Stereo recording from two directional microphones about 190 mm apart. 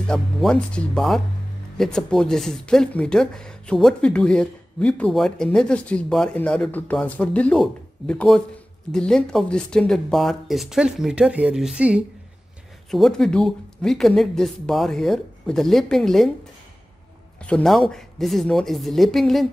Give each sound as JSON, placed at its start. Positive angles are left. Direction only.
{"t": 0.1, "sound": "speech", "side_deg": 5}
{"t": 17.4, "sound": "speech", "side_deg": 5}